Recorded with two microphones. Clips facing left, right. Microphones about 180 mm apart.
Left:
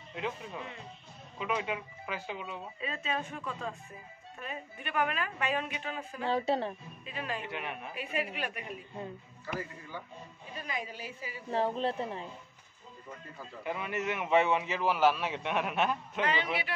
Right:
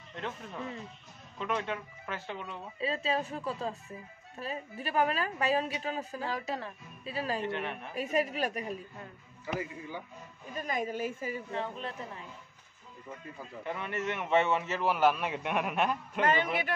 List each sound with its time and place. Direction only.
0.1 s speech: 5° left (ahead or behind)
2.8 s a woman's voice: 30° right (ahead or behind)
6.2 s speech: 30° left (ahead or behind)
7.1 s a woman's voice: 35° right (ahead or behind)
7.4 s speech: 5° left (ahead or behind)
7.9 s a woman's voice: 40° right (ahead or behind)
9.6 s a man's voice: 15° right (ahead or behind)
10.5 s a woman's voice: 45° right (ahead or behind)
11.5 s speech: 35° left (ahead or behind)
13.7 s speech: 5° left (ahead or behind)
16.2 s a woman's voice: 50° right (ahead or behind)